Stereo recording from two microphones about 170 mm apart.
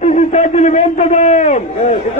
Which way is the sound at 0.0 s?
40° left (ahead or behind).